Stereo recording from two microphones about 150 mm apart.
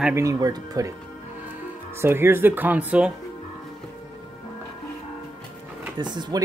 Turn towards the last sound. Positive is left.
turn(degrees=-30)  # may be behind; listen again after turning